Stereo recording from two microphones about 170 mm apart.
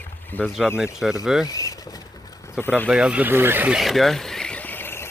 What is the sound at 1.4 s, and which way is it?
Vehicle, 20° left (ahead or behind).